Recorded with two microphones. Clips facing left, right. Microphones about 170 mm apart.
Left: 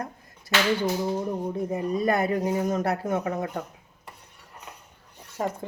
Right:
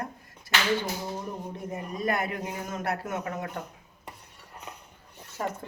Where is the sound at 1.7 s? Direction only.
35° left (ahead or behind).